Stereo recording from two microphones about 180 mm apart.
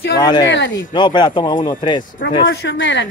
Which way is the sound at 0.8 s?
25° left (ahead or behind).